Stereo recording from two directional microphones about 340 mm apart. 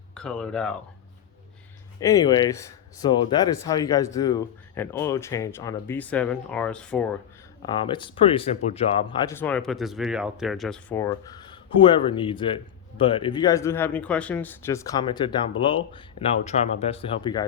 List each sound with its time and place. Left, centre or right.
0.1 s speech: centre
2.0 s speech: centre
7.6 s speech: centre